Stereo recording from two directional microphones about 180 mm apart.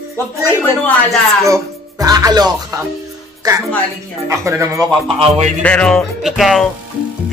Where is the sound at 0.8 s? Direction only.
Centre (ahead or behind).